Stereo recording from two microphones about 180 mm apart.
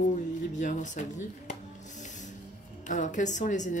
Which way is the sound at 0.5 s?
45° left (ahead or behind).